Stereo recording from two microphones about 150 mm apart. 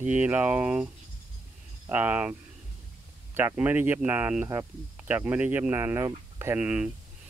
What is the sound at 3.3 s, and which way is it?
Speech, 15° right (ahead or behind).